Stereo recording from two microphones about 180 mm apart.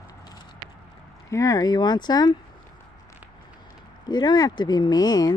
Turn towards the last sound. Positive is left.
turn(degrees=20)  # may be behind; listen again after turning